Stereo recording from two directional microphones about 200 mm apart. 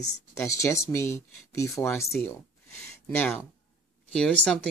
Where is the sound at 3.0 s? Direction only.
10° left (ahead or behind).